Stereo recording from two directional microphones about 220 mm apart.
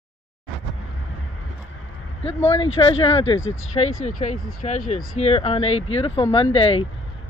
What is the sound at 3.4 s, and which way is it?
Speech, 65° left (ahead or behind).